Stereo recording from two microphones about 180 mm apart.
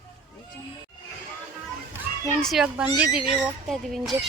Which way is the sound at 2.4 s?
Centre (ahead or behind).